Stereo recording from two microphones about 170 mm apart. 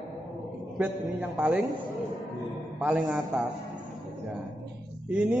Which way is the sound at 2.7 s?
5° right (ahead or behind).